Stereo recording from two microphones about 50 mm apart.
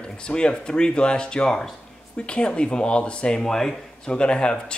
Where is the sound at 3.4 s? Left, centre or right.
Centre.